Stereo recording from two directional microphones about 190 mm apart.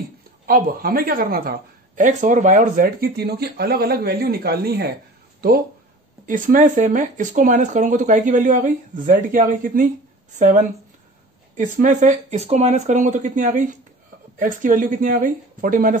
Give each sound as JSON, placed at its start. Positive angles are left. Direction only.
{"t": 0.5, "sound": "speech", "side_deg": -50}
{"t": 6.2, "sound": "speech", "side_deg": -45}